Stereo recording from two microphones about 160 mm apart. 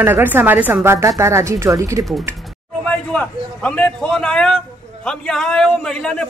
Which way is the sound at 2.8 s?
5° left (ahead or behind).